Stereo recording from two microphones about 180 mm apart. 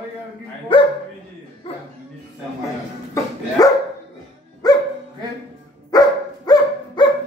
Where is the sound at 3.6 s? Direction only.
20° left (ahead or behind).